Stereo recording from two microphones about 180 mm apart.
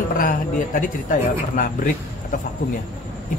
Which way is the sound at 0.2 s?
45° left (ahead or behind).